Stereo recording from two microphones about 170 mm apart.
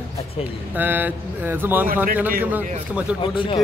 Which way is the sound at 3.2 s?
30° left (ahead or behind).